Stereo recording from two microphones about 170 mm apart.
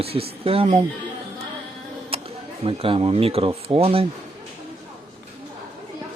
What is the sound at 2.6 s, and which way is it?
Speech, 30° right (ahead or behind).